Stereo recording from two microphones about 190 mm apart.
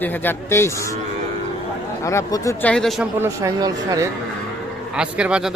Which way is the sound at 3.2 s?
15° right (ahead or behind).